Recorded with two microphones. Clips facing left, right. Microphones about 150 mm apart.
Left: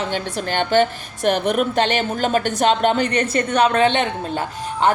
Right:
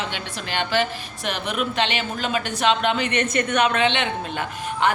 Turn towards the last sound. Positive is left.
turn(degrees=40)  # may be behind; listen again after turning